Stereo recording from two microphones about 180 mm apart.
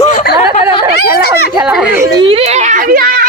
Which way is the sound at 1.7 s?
10° right (ahead or behind).